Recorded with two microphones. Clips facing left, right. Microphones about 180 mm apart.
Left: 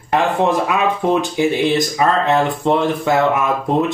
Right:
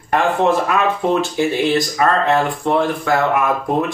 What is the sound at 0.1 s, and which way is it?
Speech, 15° left (ahead or behind).